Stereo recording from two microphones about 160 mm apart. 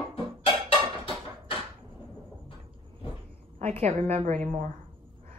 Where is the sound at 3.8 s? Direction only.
40° right (ahead or behind).